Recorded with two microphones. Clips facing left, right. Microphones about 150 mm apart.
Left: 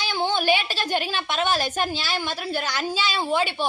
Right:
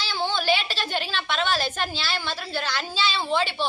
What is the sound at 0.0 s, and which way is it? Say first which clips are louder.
A woman's voice: left 3 dB; 15° left (ahead or behind).